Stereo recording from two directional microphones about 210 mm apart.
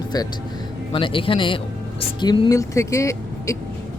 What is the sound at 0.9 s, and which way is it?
Speech, 25° left (ahead or behind).